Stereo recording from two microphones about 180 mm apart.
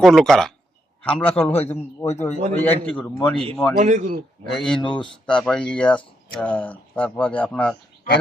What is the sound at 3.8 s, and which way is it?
Speech, 45° right (ahead or behind).